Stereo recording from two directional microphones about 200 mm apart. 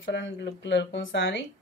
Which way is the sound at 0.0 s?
65° left (ahead or behind).